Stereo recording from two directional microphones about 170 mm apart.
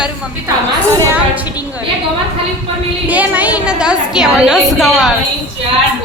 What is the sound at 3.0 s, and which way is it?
A woman's voice, 10° right (ahead or behind).